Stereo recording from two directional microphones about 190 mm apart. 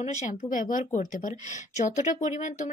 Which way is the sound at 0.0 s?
40° left (ahead or behind).